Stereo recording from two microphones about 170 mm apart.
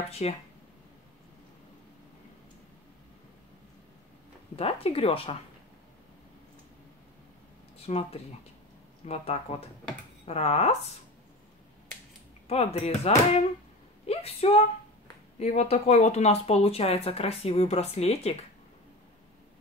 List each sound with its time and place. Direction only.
0.1 s speech: 35° left (ahead or behind)
4.6 s speech: 35° left (ahead or behind)
7.8 s speech: 35° left (ahead or behind)
12.4 s speech: 35° left (ahead or behind)